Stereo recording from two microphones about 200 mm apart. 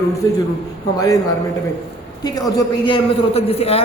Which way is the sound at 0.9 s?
15° left (ahead or behind).